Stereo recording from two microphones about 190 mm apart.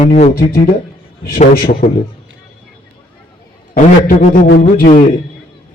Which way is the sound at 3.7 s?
45° left (ahead or behind).